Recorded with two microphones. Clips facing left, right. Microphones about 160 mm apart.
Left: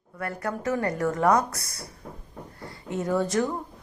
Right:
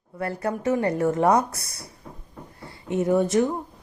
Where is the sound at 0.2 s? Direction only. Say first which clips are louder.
Right 4 dB; 25° right (ahead or behind).